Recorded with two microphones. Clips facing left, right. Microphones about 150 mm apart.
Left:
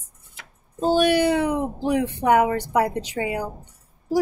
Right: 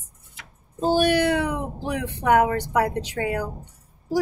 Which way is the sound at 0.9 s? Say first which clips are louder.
Left 2 dB; 5° left (ahead or behind).